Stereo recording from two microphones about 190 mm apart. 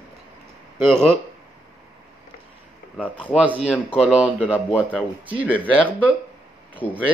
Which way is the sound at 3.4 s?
5° right (ahead or behind).